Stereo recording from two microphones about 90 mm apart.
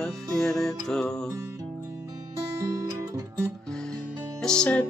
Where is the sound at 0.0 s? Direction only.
5° left (ahead or behind).